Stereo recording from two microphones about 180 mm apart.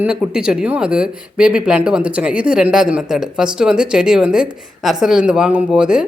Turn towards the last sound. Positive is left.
turn(degrees=-5)  # may be behind; listen again after turning